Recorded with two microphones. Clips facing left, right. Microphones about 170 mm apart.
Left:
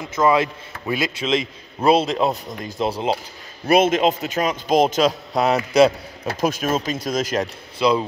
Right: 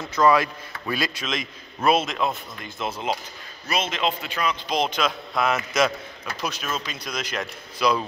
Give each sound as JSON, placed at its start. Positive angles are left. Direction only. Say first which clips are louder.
{"t": 0.0, "sound": "a man's voice", "louder": "left 1 dB", "side_deg": 20}
{"t": 3.6, "sound": "a man's voice", "louder": "left 10 dB", "side_deg": 55}
{"t": 6.4, "sound": "speech", "louder": "left 9 dB", "side_deg": 45}
{"t": 7.8, "sound": "a man's voice", "louder": "left 4 dB", "side_deg": 25}